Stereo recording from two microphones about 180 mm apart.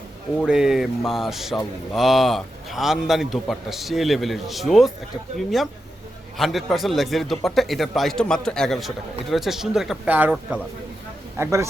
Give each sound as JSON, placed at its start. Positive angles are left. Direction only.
{"t": 0.4, "sound": "a man's voice", "side_deg": -5}